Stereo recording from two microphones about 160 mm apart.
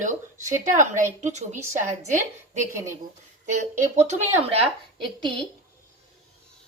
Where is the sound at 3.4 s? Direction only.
45° right (ahead or behind).